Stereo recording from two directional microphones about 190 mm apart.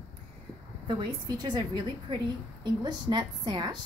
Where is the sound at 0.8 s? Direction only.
25° right (ahead or behind).